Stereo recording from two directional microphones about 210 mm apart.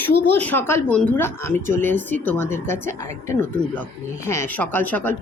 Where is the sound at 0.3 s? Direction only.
10° left (ahead or behind).